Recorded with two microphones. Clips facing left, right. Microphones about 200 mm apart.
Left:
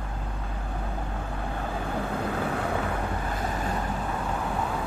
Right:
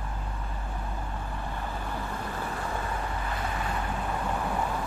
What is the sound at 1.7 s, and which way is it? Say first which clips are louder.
Vehicle: left 5 dB; 60° left (ahead or behind).